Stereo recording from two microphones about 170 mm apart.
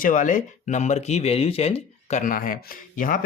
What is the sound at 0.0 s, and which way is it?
Speech, 50° left (ahead or behind).